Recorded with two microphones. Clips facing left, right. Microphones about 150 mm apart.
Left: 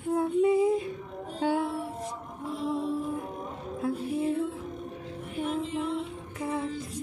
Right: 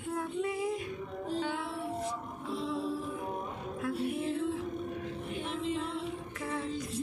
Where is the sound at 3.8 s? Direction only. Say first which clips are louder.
Left 4 dB; 30° left (ahead or behind).